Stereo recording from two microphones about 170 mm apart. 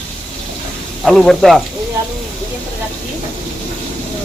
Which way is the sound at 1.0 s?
Centre (ahead or behind).